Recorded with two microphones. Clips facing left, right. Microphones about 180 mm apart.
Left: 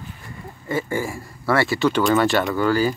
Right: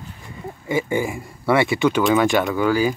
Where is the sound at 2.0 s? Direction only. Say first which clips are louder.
Right 1 dB; centre (ahead or behind).